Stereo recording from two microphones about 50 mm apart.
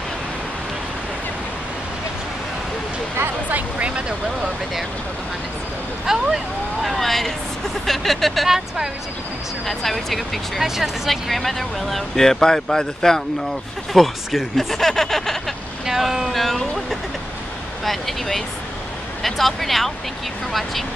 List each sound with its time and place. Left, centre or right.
3.4 s speech: right
6.0 s speech: centre
9.7 s speech: centre
13.9 s speech: centre
15.8 s speech: centre